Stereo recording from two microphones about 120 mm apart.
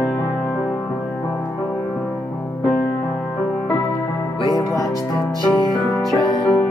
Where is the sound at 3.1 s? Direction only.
5° left (ahead or behind).